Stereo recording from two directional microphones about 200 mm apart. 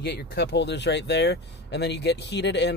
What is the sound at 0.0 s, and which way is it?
Speech, 55° left (ahead or behind).